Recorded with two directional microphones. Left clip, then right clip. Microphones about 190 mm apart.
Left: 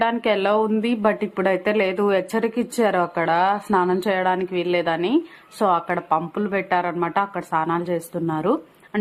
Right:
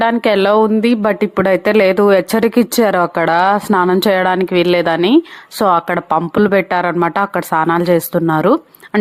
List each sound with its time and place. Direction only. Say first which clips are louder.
0.0 s speech: right 7 dB; 45° right (ahead or behind)